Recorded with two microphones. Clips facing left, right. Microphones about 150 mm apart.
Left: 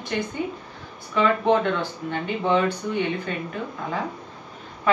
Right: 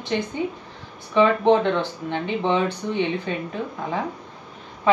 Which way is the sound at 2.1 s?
20° right (ahead or behind).